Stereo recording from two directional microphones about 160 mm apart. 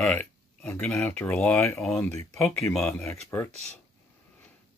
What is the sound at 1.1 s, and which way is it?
Speech, 15° left (ahead or behind).